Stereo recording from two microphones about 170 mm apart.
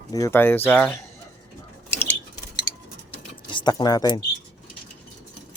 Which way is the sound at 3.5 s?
25° left (ahead or behind).